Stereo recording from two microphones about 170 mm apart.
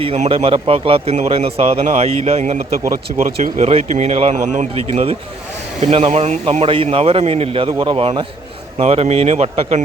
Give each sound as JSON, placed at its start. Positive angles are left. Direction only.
{"t": 0.0, "sound": "a man's voice", "side_deg": -35}
{"t": 7.7, "sound": "a man's voice", "side_deg": -20}
{"t": 7.9, "sound": "a man's voice", "side_deg": -35}